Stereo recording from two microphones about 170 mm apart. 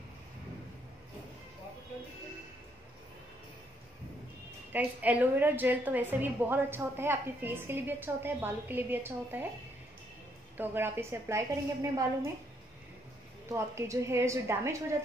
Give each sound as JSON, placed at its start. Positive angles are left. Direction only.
{"t": 4.7, "sound": "a woman's voice", "side_deg": -10}
{"t": 10.6, "sound": "a woman's voice", "side_deg": -15}
{"t": 13.5, "sound": "a woman's voice", "side_deg": -15}